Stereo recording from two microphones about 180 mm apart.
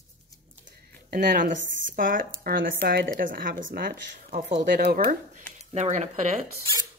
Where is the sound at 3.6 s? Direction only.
65° right (ahead or behind).